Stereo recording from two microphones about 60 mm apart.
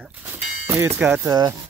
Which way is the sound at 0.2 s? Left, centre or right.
Right.